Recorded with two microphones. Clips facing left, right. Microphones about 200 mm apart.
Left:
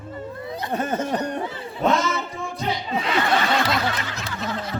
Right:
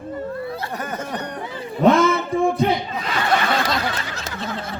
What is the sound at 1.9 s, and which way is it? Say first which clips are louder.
Music: right 6 dB; 55° right (ahead or behind).